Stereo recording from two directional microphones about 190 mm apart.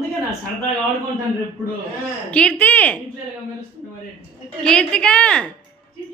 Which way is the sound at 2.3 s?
5° left (ahead or behind).